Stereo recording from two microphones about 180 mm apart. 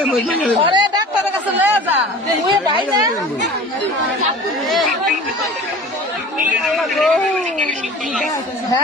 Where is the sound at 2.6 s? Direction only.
20° right (ahead or behind).